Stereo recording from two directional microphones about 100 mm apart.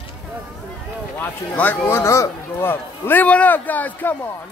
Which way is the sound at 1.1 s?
15° left (ahead or behind).